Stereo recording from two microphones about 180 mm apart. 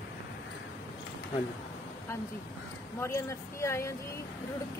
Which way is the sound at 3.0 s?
15° left (ahead or behind).